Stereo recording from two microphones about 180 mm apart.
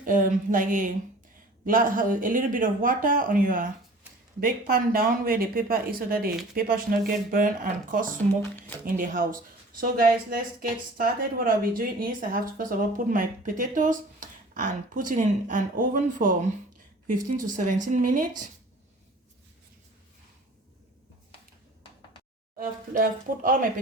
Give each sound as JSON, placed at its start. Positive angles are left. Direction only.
{"t": 0.0, "sound": "speech", "side_deg": -45}
{"t": 17.7, "sound": "speech", "side_deg": -45}
{"t": 22.5, "sound": "speech", "side_deg": -50}